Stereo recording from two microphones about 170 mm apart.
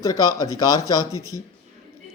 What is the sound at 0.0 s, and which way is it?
A man's voice, 20° left (ahead or behind).